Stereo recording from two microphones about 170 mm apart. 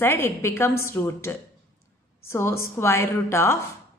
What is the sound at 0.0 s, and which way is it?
A woman's voice, 15° left (ahead or behind).